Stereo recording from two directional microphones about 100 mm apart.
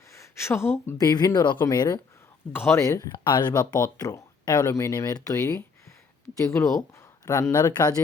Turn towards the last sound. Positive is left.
turn(degrees=40)  # may be behind; listen again after turning